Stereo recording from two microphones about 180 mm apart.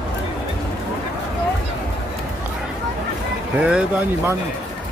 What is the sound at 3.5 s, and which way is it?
Speech, 5° right (ahead or behind).